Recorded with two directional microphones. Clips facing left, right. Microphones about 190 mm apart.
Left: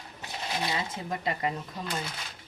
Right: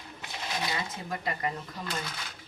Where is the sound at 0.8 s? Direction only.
25° left (ahead or behind).